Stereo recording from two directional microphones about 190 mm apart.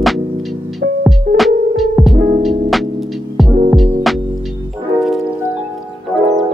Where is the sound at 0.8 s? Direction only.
65° right (ahead or behind).